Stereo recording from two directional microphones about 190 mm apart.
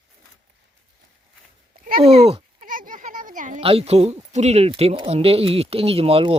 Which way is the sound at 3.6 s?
30° right (ahead or behind).